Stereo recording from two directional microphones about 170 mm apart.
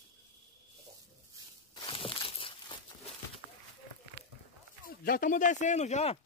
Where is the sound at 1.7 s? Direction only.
30° left (ahead or behind).